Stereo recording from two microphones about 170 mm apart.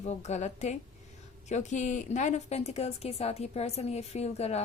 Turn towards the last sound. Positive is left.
turn(degrees=40)  # may be behind; listen again after turning